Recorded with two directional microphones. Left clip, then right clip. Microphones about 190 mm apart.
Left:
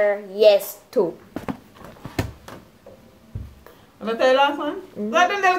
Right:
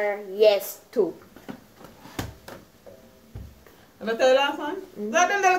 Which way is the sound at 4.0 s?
Centre (ahead or behind).